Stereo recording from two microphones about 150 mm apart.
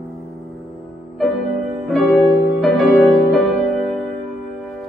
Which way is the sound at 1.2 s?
Centre (ahead or behind).